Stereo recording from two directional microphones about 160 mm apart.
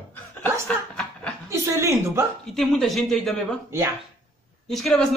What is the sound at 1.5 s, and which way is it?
Speech, 20° right (ahead or behind).